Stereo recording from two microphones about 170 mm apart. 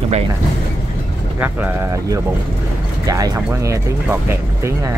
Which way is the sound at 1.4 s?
15° right (ahead or behind).